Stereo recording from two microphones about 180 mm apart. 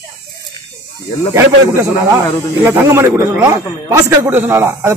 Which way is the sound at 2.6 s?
10° right (ahead or behind).